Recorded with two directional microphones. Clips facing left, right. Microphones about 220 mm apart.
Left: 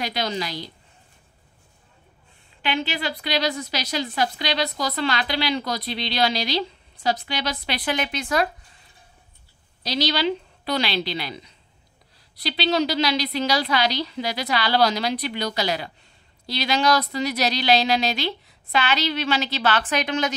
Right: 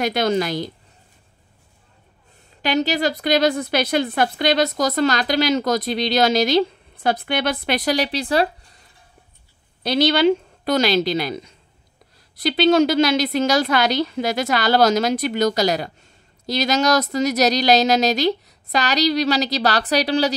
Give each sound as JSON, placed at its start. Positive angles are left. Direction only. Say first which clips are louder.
{"t": 0.0, "sound": "a woman's voice", "louder": "right 8 dB", "side_deg": -50}
{"t": 2.6, "sound": "a woman's voice", "louder": "right 7 dB", "side_deg": -40}
{"t": 9.8, "sound": "a woman's voice", "louder": "right 7 dB", "side_deg": -55}